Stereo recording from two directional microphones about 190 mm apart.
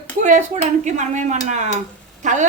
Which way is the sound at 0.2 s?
40° right (ahead or behind).